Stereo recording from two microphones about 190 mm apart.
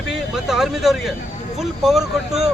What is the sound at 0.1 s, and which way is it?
Speech, centre (ahead or behind).